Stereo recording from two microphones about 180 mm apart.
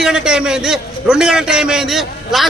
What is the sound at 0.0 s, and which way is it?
A man's voice, 5° right (ahead or behind).